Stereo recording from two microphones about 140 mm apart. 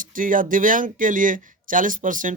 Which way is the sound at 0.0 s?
75° right (ahead or behind).